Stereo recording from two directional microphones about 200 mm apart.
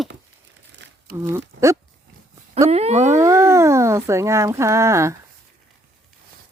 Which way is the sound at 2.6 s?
30° right (ahead or behind).